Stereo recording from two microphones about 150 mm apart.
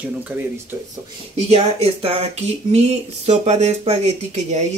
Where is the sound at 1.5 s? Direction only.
45° right (ahead or behind).